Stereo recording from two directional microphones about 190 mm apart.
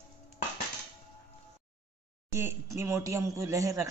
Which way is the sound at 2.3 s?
15° right (ahead or behind).